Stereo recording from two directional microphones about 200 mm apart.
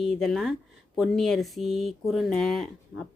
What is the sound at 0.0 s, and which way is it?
Speech, centre (ahead or behind).